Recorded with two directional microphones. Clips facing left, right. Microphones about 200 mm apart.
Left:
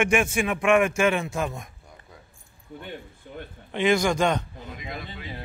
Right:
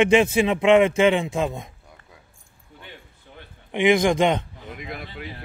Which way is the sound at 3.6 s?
15° right (ahead or behind).